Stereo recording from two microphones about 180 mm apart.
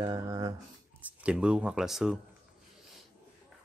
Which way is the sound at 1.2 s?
5° right (ahead or behind).